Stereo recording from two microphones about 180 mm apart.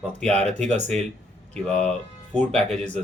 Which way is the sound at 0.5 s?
40° right (ahead or behind).